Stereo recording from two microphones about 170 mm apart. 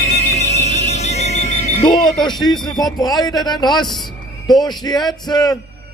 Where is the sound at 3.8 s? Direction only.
Centre (ahead or behind).